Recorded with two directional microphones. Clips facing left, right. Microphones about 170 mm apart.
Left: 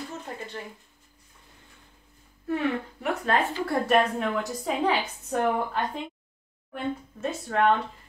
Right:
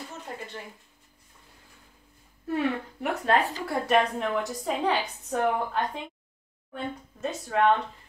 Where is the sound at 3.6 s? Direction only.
Centre (ahead or behind).